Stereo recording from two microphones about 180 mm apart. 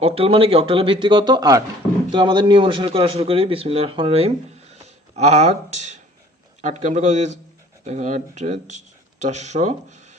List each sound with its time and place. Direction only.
0.0 s speech: 30° right (ahead or behind)
4.7 s a sound: 40° right (ahead or behind)
6.6 s speech: 40° right (ahead or behind)